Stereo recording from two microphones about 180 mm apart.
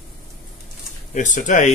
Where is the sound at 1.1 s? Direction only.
45° left (ahead or behind).